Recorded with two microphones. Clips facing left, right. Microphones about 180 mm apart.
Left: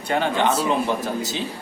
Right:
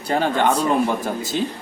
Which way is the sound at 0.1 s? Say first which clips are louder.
Right 2 dB; 45° right (ahead or behind).